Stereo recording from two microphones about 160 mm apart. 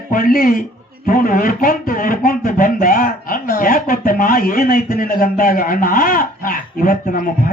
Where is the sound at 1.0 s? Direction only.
60° left (ahead or behind).